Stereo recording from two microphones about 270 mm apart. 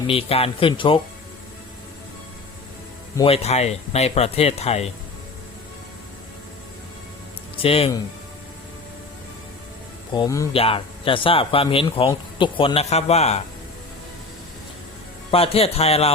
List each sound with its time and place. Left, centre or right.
0.1 s speech: left
3.2 s speech: left
7.6 s speech: left
10.2 s speech: centre
15.3 s speech: left